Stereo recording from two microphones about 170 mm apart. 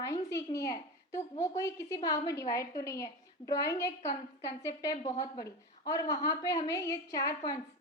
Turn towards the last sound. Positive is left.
turn(degrees=20)  # may be behind; listen again after turning